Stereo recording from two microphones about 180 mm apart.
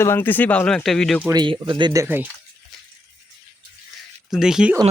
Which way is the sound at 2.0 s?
10° right (ahead or behind).